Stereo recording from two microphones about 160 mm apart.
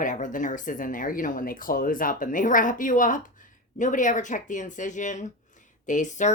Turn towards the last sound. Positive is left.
turn(degrees=50)  # may be behind; listen again after turning